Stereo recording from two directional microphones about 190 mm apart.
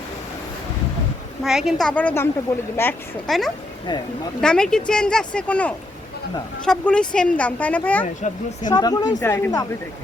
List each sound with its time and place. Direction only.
1.5 s a woman's voice: centre (ahead or behind); by 2.9 s 15° left (ahead or behind)
3.2 s a woman's voice: centre (ahead or behind)
8.0 s speech: 40° left (ahead or behind)
8.7 s a woman's voice: 20° left (ahead or behind)